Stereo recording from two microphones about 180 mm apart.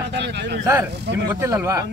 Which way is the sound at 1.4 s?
15° right (ahead or behind).